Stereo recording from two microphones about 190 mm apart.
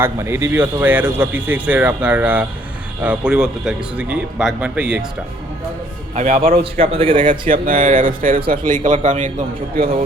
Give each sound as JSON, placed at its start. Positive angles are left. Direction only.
{"t": 0.0, "sound": "speech", "side_deg": -15}
{"t": 6.1, "sound": "speech", "side_deg": -40}
{"t": 6.6, "sound": "speech", "side_deg": -30}
{"t": 7.3, "sound": "speech", "side_deg": -45}